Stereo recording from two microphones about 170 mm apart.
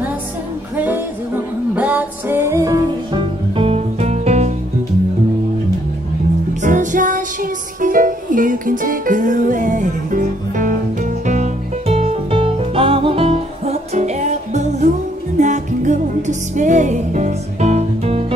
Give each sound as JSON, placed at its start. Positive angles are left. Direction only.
{"t": 0.7, "sound": "music", "side_deg": -10}
{"t": 6.6, "sound": "music", "side_deg": -50}